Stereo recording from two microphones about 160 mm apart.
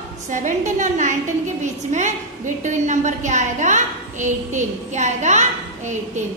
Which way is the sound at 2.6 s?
50° right (ahead or behind).